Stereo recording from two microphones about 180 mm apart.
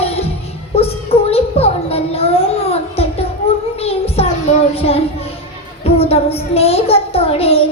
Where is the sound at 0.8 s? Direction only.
35° left (ahead or behind).